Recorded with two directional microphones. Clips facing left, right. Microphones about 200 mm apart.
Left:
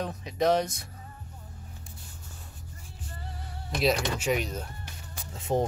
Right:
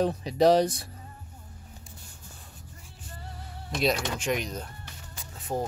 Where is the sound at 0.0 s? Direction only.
35° right (ahead or behind).